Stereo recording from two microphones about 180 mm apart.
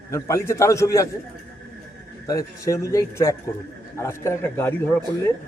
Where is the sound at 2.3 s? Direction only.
20° left (ahead or behind).